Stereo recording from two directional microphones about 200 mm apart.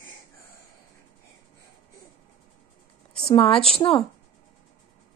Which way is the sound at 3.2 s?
30° left (ahead or behind).